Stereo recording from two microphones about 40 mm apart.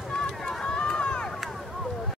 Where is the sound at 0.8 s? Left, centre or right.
Left.